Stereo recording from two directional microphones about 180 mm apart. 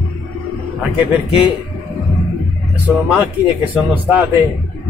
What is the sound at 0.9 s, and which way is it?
Speech, centre (ahead or behind).